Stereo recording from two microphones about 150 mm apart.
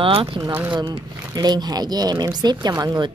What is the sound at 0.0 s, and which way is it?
Speech, 35° right (ahead or behind).